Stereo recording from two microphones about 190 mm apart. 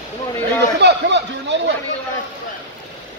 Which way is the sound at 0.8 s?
70° right (ahead or behind).